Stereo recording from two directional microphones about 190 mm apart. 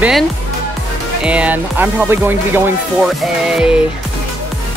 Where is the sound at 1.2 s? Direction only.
5° right (ahead or behind).